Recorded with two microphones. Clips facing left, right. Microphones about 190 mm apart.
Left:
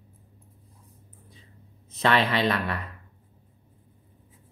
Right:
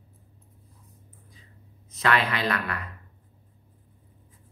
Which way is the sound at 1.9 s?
25° left (ahead or behind).